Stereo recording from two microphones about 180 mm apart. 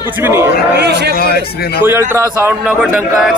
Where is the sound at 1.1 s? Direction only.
60° left (ahead or behind).